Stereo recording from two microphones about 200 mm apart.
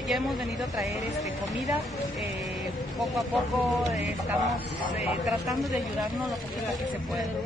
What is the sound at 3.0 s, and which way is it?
Speech, centre (ahead or behind).